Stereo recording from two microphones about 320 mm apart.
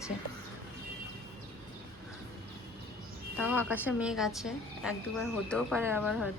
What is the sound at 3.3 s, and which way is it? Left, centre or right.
A woman's voice, centre.